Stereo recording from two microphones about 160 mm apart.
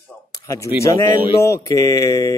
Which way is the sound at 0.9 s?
15° left (ahead or behind).